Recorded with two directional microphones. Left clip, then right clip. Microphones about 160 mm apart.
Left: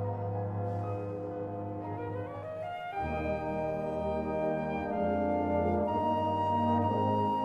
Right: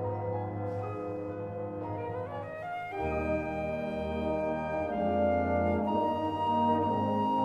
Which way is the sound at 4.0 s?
25° right (ahead or behind).